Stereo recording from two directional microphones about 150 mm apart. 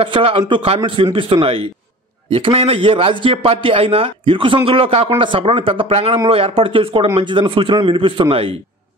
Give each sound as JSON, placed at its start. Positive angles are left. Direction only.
{"t": 0.0, "sound": "a man's voice", "side_deg": -35}